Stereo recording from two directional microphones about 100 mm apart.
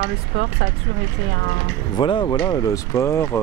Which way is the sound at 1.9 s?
50° left (ahead or behind).